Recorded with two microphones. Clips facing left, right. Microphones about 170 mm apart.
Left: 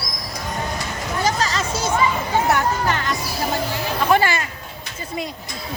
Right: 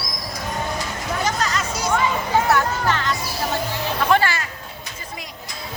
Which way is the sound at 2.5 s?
15° left (ahead or behind).